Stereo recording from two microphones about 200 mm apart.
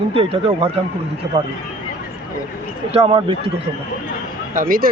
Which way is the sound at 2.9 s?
25° right (ahead or behind).